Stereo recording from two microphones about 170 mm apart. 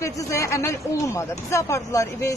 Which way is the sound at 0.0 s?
15° left (ahead or behind).